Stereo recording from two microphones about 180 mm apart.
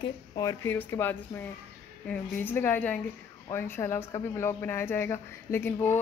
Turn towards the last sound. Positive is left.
turn(degrees=15)  # may be behind; listen again after turning